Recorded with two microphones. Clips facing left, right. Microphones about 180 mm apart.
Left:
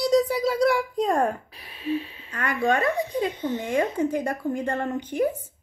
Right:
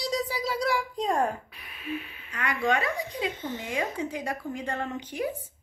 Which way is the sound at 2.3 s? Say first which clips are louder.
Left 3 dB; 50° left (ahead or behind).